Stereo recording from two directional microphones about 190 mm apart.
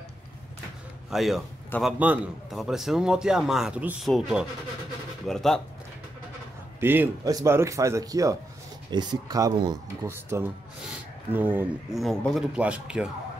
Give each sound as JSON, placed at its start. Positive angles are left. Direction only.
{"t": 1.1, "sound": "a man's voice", "side_deg": 0}
{"t": 6.8, "sound": "speech", "side_deg": -10}
{"t": 12.0, "sound": "a man's voice", "side_deg": 0}